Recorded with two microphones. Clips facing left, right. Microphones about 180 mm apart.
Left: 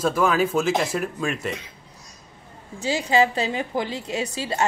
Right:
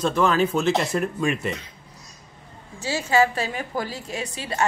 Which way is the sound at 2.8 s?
15° left (ahead or behind).